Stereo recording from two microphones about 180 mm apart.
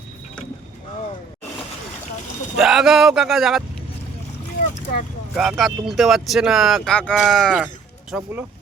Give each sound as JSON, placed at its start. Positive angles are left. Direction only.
{"t": 2.6, "sound": "speech", "side_deg": 0}
{"t": 4.6, "sound": "boat", "side_deg": 50}
{"t": 5.3, "sound": "speech", "side_deg": 0}
{"t": 8.1, "sound": "speech", "side_deg": -10}